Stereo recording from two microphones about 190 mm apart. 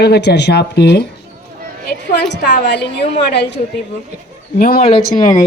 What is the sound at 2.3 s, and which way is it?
A woman's voice, 65° left (ahead or behind).